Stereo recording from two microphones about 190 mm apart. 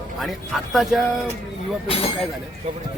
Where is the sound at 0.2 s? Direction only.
Centre (ahead or behind).